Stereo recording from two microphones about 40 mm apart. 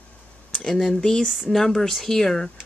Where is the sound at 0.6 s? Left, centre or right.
Centre.